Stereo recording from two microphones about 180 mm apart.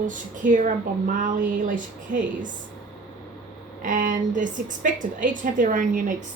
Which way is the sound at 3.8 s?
45° right (ahead or behind).